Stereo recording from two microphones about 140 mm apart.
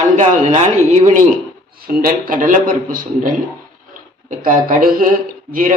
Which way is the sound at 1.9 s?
90° right.